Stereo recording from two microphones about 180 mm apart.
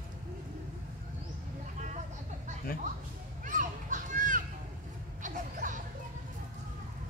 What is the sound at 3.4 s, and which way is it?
Children playing, 45° right (ahead or behind).